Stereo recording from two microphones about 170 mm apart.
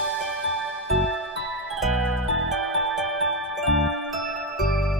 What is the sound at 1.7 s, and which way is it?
Music, centre (ahead or behind).